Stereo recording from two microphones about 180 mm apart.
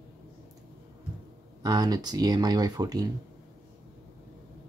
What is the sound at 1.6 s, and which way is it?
Speech, 20° right (ahead or behind).